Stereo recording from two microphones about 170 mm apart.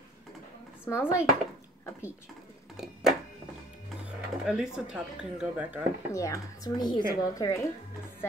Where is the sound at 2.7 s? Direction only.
Centre (ahead or behind).